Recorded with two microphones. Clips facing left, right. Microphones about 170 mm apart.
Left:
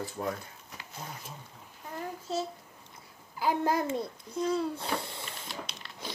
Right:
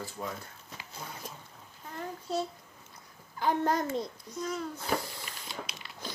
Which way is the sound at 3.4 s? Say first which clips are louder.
Even; 5° left (ahead or behind).